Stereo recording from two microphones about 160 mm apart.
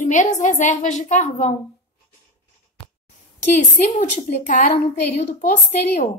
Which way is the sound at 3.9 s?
50° left (ahead or behind).